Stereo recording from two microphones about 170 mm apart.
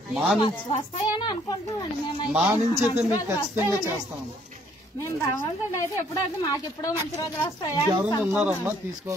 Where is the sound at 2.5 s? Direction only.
15° right (ahead or behind).